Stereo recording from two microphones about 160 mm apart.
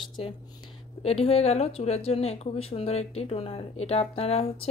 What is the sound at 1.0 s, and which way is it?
Speech, 40° left (ahead or behind).